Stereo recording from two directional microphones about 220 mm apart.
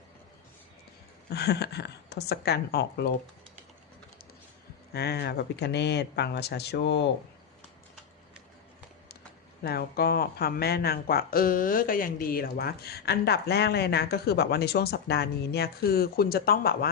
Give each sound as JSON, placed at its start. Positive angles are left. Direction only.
{"t": 1.3, "sound": "speech", "side_deg": 50}
{"t": 4.9, "sound": "speech", "side_deg": 45}
{"t": 9.6, "sound": "speech", "side_deg": 45}